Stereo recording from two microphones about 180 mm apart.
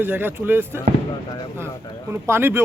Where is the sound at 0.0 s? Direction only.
10° right (ahead or behind).